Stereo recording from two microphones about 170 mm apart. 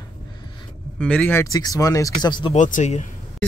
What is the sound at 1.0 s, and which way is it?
Speech, 5° left (ahead or behind).